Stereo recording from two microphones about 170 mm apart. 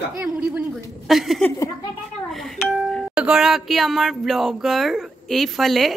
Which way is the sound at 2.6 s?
Centre (ahead or behind).